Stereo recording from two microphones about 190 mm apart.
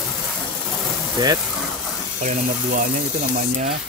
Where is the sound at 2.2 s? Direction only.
40° right (ahead or behind).